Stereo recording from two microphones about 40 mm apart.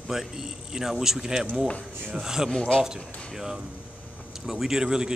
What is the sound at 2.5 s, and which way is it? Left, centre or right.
Speech, left.